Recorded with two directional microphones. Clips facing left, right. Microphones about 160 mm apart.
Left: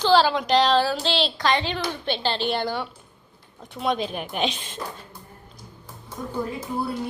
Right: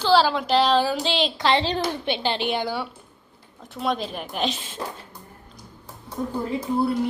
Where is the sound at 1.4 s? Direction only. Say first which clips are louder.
Right 2 dB; 25° right (ahead or behind).